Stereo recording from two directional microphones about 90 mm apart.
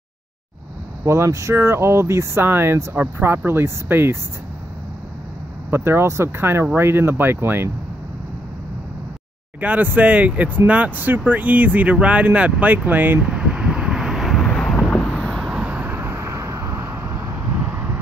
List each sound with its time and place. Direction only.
1.0 s speech: 35° right (ahead or behind)
5.7 s speech: 30° right (ahead or behind)
9.6 s speech: 20° right (ahead or behind)
13.3 s wind noise: 10° right (ahead or behind); by 15.5 s 5° left (ahead or behind)
15.5 s vehicle: 15° right (ahead or behind)